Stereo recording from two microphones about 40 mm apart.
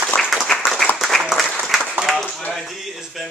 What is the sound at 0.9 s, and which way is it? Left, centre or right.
Applause, centre.